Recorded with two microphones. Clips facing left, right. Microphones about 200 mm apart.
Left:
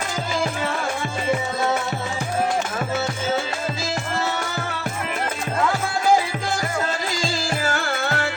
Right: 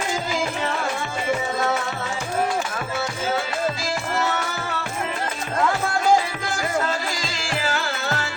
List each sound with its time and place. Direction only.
7.5 s music: 50° left (ahead or behind)